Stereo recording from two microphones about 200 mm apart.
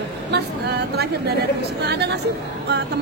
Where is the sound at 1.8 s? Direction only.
55° right (ahead or behind).